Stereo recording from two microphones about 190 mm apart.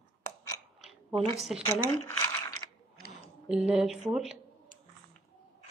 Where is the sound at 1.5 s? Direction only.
5° right (ahead or behind).